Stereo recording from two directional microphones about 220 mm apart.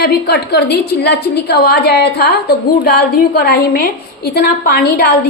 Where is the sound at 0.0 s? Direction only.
45° left (ahead or behind).